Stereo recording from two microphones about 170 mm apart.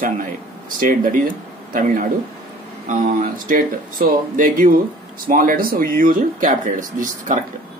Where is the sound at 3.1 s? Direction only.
55° right (ahead or behind).